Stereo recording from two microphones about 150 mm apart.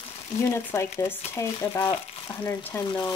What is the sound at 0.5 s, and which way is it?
Speech, 20° left (ahead or behind).